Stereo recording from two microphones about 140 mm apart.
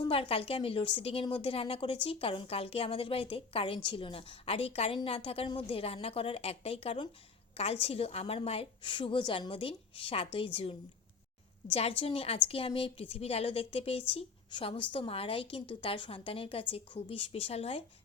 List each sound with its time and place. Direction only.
0.0 s a woman's voice: 40° left (ahead or behind)